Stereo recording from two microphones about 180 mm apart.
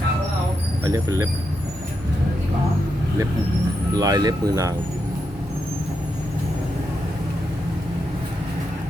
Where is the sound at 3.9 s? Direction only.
20° right (ahead or behind).